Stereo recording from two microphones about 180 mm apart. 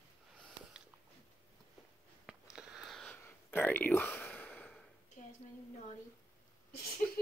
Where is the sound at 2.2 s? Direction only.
5° right (ahead or behind).